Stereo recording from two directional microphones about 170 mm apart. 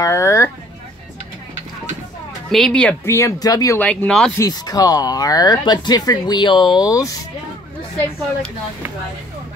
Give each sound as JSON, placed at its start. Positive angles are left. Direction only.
{"t": 0.0, "sound": "speech", "side_deg": 15}
{"t": 2.5, "sound": "speech", "side_deg": 5}
{"t": 3.8, "sound": "speech", "side_deg": 10}
{"t": 4.4, "sound": "speech", "side_deg": 20}